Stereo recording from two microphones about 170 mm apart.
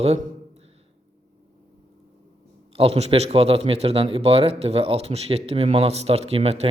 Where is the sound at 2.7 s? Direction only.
35° right (ahead or behind).